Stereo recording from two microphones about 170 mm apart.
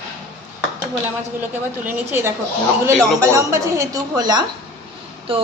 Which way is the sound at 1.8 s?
10° right (ahead or behind).